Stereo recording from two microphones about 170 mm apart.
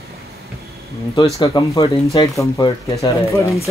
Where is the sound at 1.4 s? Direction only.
20° left (ahead or behind).